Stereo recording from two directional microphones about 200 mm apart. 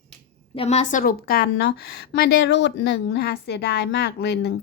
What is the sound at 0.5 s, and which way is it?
A woman's voice, 30° left (ahead or behind).